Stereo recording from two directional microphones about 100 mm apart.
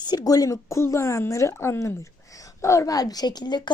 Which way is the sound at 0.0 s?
45° left (ahead or behind).